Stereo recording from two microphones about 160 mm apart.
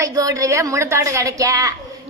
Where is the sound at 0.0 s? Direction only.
20° right (ahead or behind).